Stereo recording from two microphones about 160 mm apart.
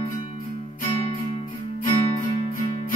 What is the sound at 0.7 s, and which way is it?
Music, 55° left (ahead or behind).